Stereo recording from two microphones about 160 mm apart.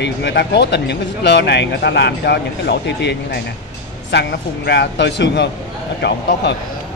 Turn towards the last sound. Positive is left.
turn(degrees=90)